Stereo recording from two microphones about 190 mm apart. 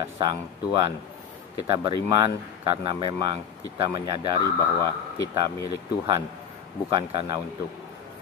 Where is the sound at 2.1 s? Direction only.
25° right (ahead or behind).